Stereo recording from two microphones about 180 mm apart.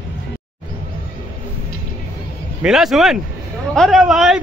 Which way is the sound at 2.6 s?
5° right (ahead or behind).